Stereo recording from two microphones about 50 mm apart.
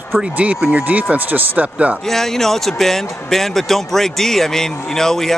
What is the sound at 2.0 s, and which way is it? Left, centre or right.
Speech, centre.